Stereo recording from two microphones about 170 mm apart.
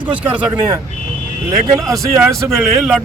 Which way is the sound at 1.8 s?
Centre (ahead or behind).